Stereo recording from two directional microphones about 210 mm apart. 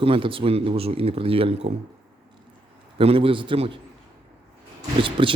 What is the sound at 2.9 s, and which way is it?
Speech, 25° right (ahead or behind).